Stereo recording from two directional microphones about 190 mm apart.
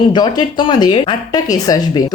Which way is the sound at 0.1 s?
25° left (ahead or behind).